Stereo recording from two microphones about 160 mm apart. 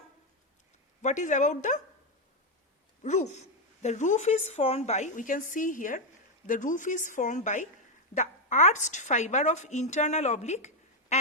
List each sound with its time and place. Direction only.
1.0 s a woman's voice: 50° left (ahead or behind)
3.0 s a woman's voice: 45° left (ahead or behind)